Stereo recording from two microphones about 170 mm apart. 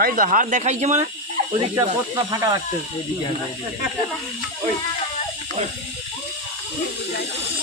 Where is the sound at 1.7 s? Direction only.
20° right (ahead or behind).